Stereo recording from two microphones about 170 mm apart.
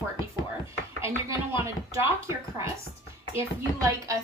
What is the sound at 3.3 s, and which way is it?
Speech, 15° right (ahead or behind).